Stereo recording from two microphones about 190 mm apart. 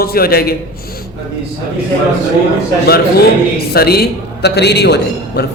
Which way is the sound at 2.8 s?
55° left (ahead or behind).